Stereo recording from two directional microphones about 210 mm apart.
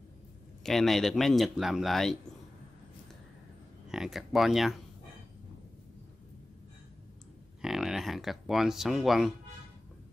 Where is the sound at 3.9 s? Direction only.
Centre (ahead or behind).